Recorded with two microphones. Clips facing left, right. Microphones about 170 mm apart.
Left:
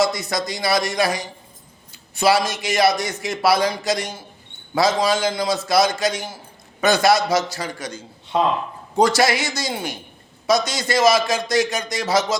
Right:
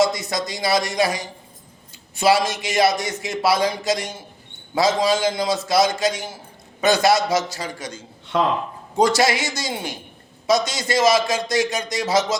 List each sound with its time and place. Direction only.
0.0 s a man's voice: 20° right (ahead or behind)